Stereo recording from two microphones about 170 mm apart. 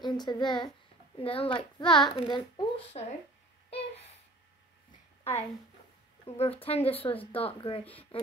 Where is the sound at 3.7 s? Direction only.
35° left (ahead or behind).